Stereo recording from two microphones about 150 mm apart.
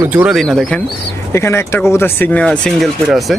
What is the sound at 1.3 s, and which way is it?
Speech, 15° left (ahead or behind).